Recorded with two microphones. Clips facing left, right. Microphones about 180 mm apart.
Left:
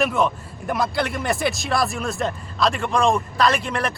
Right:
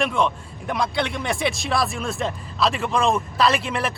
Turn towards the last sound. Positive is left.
turn(degrees=0)  # may be behind; listen again after turning